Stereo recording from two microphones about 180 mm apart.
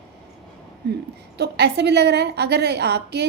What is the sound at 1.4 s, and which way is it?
A woman's voice, 65° right (ahead or behind).